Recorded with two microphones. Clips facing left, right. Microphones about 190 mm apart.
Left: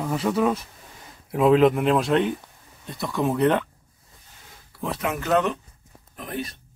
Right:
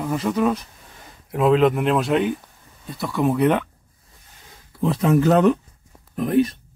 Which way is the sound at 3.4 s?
10° right (ahead or behind).